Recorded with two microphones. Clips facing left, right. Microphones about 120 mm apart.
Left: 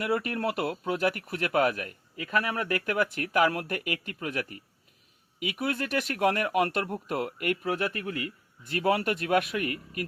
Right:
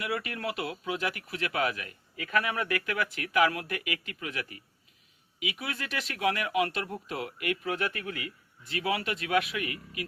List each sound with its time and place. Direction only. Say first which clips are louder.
0.0 s speech: left 5 dB; 40° left (ahead or behind)
2.1 s speech: left 1 dB; 30° left (ahead or behind)